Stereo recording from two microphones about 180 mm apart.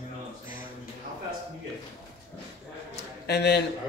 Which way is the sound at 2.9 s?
65° left (ahead or behind).